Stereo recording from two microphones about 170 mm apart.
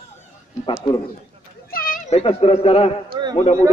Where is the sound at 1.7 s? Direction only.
60° left (ahead or behind).